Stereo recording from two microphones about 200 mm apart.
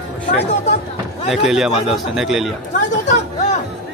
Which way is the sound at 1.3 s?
Centre (ahead or behind).